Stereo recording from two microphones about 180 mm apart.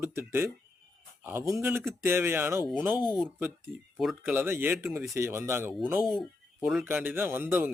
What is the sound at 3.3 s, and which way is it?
A man's voice, 10° right (ahead or behind).